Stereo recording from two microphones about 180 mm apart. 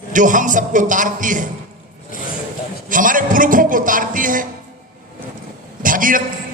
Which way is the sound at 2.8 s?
50° right (ahead or behind).